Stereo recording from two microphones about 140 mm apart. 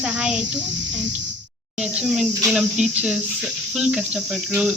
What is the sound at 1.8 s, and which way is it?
Speech, 5° right (ahead or behind).